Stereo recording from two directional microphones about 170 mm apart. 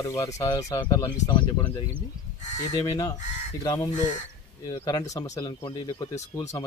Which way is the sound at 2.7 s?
20° left (ahead or behind).